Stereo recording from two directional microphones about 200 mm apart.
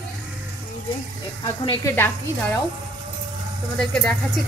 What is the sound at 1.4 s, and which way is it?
Speech, 15° left (ahead or behind).